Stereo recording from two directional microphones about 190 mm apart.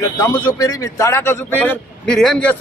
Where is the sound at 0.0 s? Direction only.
20° left (ahead or behind).